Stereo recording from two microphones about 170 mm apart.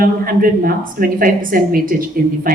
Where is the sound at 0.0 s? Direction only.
60° right (ahead or behind).